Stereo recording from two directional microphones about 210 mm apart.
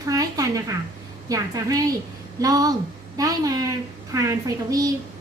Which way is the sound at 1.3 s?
15° right (ahead or behind).